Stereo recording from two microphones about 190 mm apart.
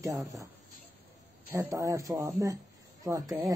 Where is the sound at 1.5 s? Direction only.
15° right (ahead or behind).